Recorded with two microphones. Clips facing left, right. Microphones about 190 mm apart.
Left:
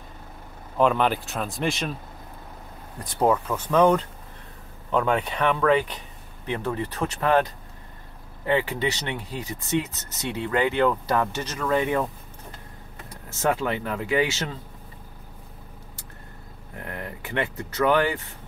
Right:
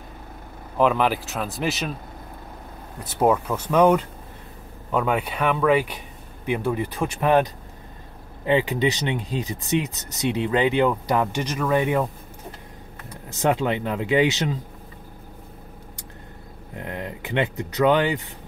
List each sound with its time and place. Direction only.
0.7 s speech: 5° right (ahead or behind)
3.0 s speech: 5° right (ahead or behind)
13.3 s speech: 20° right (ahead or behind)
16.7 s speech: 20° right (ahead or behind)